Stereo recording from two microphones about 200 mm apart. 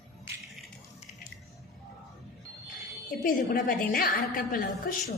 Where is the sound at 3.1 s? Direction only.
45° left (ahead or behind).